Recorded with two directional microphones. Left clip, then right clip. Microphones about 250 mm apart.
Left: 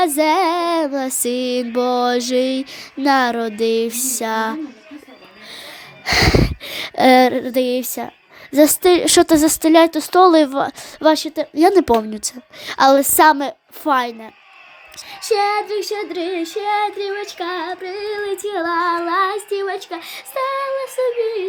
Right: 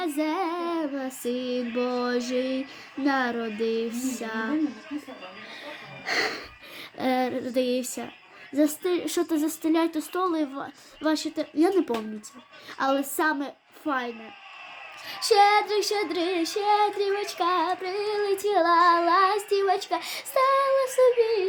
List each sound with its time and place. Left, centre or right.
0.0 s female singing: left
6.1 s female singing: left
15.3 s child singing: centre